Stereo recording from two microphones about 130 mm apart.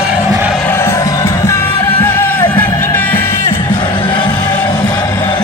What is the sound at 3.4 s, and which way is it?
Music, 40° left (ahead or behind).